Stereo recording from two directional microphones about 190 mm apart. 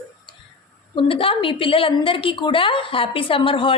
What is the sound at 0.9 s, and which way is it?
A woman's voice, 25° left (ahead or behind).